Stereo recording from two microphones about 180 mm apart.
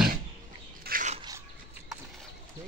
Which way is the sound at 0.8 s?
50° right (ahead or behind).